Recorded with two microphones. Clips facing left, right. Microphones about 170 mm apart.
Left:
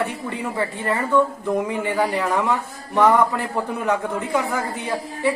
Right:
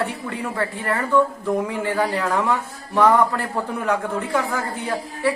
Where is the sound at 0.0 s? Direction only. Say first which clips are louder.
Even; 15° left (ahead or behind).